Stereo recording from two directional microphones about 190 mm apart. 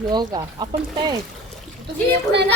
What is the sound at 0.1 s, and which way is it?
Speech, 20° right (ahead or behind).